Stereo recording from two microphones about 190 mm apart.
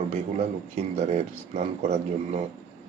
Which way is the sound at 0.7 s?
35° right (ahead or behind).